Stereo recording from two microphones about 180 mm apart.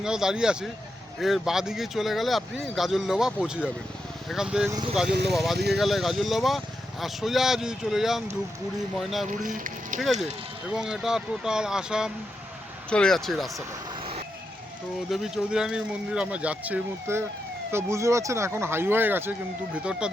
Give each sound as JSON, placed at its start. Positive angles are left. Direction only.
{"t": 0.0, "sound": "speech", "side_deg": -5}
{"t": 9.4, "sound": "speech", "side_deg": -50}
{"t": 10.0, "sound": "speech", "side_deg": 0}
{"t": 15.1, "sound": "speech", "side_deg": -5}